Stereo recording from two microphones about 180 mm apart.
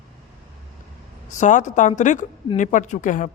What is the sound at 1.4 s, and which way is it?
A woman's voice, 45° left (ahead or behind).